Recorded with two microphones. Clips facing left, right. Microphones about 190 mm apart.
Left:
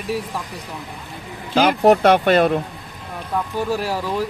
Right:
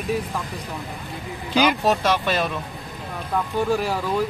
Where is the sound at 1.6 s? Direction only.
55° left (ahead or behind).